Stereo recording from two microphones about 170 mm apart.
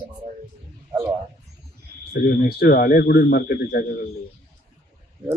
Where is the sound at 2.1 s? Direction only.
60° left (ahead or behind).